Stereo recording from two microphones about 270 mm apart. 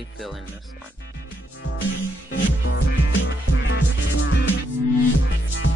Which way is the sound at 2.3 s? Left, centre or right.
Left.